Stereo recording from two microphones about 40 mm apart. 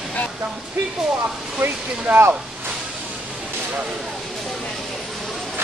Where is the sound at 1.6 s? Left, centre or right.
Right.